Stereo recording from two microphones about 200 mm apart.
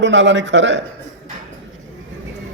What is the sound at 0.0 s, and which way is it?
Speech, 65° right (ahead or behind).